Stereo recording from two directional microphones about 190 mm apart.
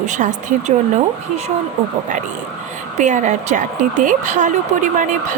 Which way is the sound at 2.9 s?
40° right (ahead or behind).